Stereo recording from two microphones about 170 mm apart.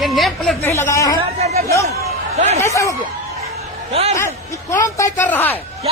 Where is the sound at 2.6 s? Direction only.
15° left (ahead or behind).